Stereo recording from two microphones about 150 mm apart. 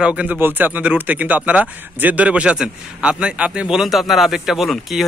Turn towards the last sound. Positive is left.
turn(degrees=0)  # may be behind; listen again after turning